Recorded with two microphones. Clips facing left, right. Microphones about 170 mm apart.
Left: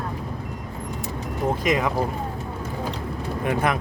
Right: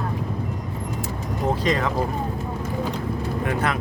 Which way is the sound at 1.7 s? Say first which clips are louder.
Left 2 dB; 10° left (ahead or behind).